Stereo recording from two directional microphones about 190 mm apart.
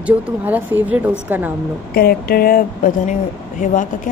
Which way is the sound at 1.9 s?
50° left (ahead or behind).